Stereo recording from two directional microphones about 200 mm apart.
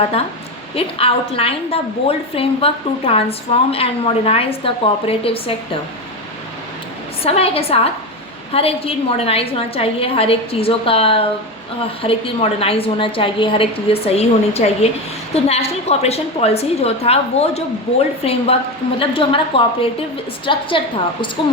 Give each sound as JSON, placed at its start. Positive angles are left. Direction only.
{"t": 0.8, "sound": "a woman's voice", "side_deg": 30}
{"t": 7.2, "sound": "a woman's voice", "side_deg": 30}